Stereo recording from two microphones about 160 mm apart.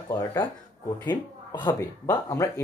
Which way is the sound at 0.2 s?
20° left (ahead or behind).